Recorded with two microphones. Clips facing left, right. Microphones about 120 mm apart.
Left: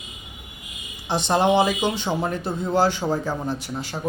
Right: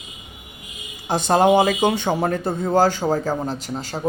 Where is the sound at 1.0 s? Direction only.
45° right (ahead or behind).